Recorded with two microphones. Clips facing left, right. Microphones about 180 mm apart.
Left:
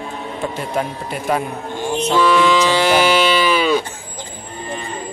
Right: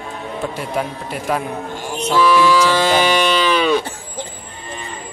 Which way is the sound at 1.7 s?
20° left (ahead or behind).